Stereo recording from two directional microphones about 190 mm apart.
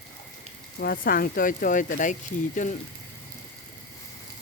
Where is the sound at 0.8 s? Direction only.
50° left (ahead or behind).